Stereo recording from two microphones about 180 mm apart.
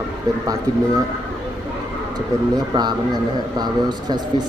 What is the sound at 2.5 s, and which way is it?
Speech, 20° right (ahead or behind).